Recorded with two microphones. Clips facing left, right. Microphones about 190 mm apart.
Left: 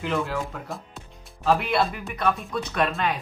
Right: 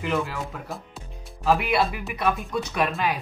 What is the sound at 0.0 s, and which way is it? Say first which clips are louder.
Speech: even; centre (ahead or behind).